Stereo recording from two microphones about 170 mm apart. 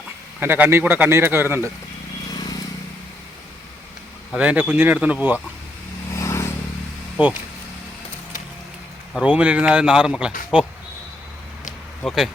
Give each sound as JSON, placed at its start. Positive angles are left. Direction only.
{"t": 0.3, "sound": "a man's voice", "side_deg": -10}
{"t": 2.3, "sound": "vehicle", "side_deg": 25}
{"t": 4.3, "sound": "a man's voice", "side_deg": -5}
{"t": 6.1, "sound": "vehicle", "side_deg": 15}
{"t": 9.2, "sound": "speech", "side_deg": -10}
{"t": 12.0, "sound": "speech", "side_deg": 0}